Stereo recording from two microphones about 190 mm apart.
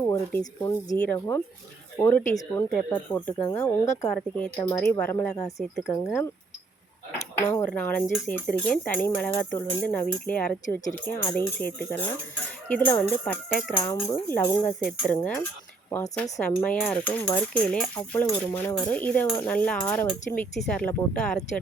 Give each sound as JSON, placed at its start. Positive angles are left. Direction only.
{"t": 0.1, "sound": "speech", "side_deg": 20}
{"t": 7.4, "sound": "speech", "side_deg": 15}